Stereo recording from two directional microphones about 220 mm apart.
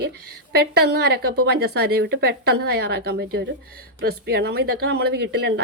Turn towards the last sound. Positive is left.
turn(degrees=-50)  # may be behind; listen again after turning